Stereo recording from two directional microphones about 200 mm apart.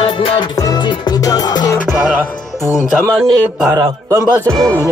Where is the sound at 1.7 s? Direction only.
Centre (ahead or behind).